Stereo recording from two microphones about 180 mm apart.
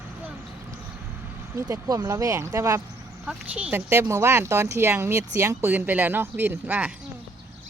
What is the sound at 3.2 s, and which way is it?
Speech, 5° right (ahead or behind).